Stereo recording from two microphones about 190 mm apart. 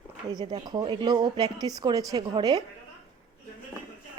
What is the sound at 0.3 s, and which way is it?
Speech, 25° right (ahead or behind).